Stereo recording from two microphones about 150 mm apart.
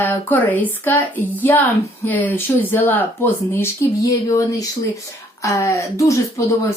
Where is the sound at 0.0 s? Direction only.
15° left (ahead or behind).